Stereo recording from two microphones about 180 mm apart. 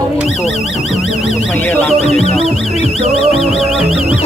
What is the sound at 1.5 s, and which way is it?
Speech, 10° left (ahead or behind).